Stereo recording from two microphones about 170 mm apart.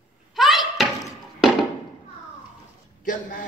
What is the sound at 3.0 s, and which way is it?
Speech, 50° left (ahead or behind).